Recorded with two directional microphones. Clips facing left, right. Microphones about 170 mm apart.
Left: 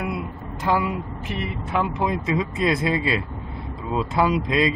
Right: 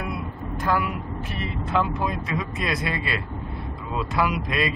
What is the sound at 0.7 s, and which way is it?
Speech, 20° left (ahead or behind).